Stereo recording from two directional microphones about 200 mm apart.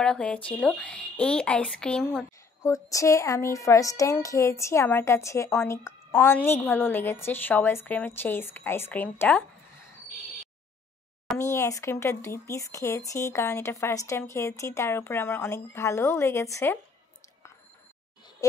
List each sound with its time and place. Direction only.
0.0 s speech: 5° left (ahead or behind)
2.6 s speech: 15° left (ahead or behind)
11.3 s speech: 15° left (ahead or behind)
18.4 s speech: 15° left (ahead or behind)